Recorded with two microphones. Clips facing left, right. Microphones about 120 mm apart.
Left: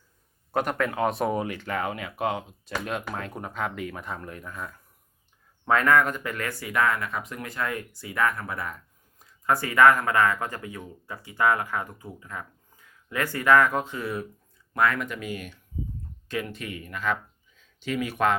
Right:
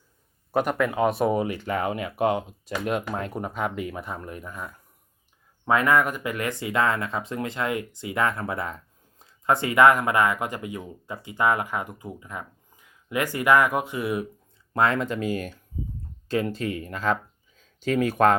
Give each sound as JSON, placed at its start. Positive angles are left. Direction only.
{"t": 0.5, "sound": "speech", "side_deg": -5}
{"t": 14.7, "sound": "speech", "side_deg": -25}